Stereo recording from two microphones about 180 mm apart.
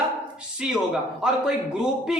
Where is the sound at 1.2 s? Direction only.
5° right (ahead or behind).